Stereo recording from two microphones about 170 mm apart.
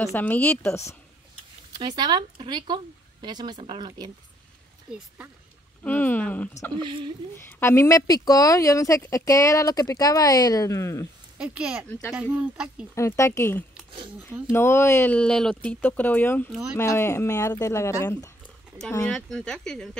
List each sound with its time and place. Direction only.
0.0 s speech: 10° left (ahead or behind)
1.7 s speech: 25° right (ahead or behind)
4.9 s speech: 10° right (ahead or behind)
5.9 s speech: 10° left (ahead or behind)
6.8 s speech: 30° right (ahead or behind)
7.3 s speech: 15° left (ahead or behind)
11.3 s speech: 5° right (ahead or behind)
12.9 s speech: 15° left (ahead or behind)